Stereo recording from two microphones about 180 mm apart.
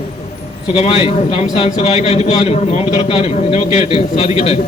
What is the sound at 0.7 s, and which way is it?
A man's voice, 35° left (ahead or behind).